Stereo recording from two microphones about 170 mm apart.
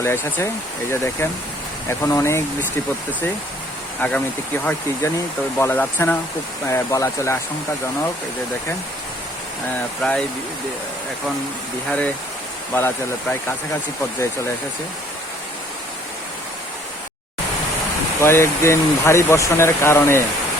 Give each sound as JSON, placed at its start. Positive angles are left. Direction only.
{"t": 0.0, "sound": "speech", "side_deg": 15}
{"t": 4.0, "sound": "speech", "side_deg": 10}
{"t": 10.0, "sound": "speech", "side_deg": 5}
{"t": 11.9, "sound": "speech", "side_deg": 5}
{"t": 18.2, "sound": "speech", "side_deg": 15}